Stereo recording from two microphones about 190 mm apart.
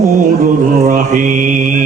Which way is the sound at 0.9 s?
45° right (ahead or behind).